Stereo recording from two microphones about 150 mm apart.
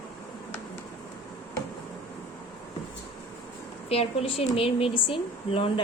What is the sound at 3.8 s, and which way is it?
A woman's voice, 40° left (ahead or behind).